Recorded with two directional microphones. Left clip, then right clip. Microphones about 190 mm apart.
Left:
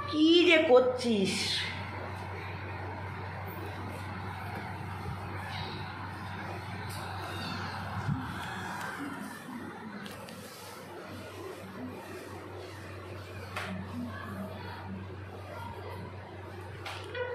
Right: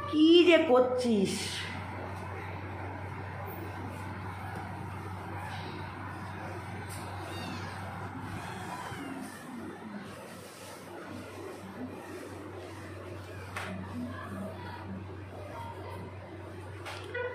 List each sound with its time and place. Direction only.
0.1 s a woman's voice: 20° right (ahead or behind)